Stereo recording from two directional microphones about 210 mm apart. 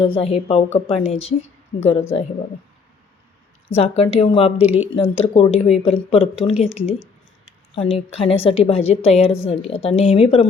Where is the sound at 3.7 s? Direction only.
30° left (ahead or behind).